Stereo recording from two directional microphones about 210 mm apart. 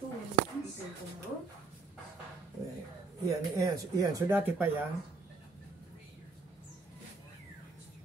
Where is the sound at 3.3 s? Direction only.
15° right (ahead or behind).